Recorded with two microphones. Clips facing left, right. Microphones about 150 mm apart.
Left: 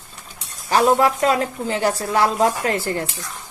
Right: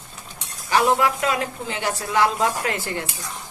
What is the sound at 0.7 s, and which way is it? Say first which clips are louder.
A woman's voice: left 3 dB; 35° left (ahead or behind).